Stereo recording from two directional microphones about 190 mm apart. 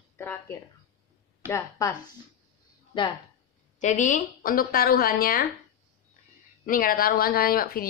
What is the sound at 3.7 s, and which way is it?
Speech, 40° left (ahead or behind).